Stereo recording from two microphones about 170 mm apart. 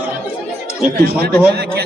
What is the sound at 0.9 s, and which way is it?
Speech, 65° right (ahead or behind).